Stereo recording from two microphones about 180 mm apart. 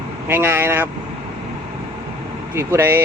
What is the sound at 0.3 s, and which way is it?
Speech, 10° right (ahead or behind).